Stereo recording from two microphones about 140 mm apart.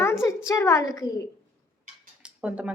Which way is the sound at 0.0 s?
20° left (ahead or behind).